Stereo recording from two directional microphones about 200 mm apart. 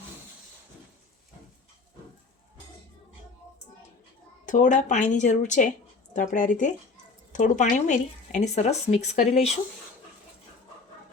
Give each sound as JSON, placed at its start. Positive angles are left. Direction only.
{"t": 4.4, "sound": "speech", "side_deg": 40}